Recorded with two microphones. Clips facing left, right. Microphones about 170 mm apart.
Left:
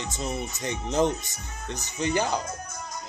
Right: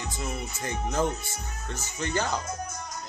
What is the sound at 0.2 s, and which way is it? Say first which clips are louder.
Speech: left 4 dB; 20° left (ahead or behind).